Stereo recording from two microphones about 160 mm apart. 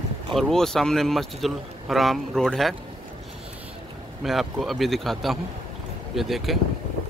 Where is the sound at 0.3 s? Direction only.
Centre (ahead or behind).